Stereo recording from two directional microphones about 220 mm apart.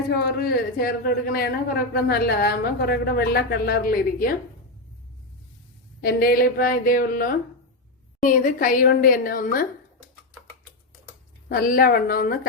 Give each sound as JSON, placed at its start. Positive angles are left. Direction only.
{"t": 0.1, "sound": "speech", "side_deg": 45}
{"t": 6.0, "sound": "a woman's voice", "side_deg": 45}
{"t": 11.4, "sound": "a woman's voice", "side_deg": 40}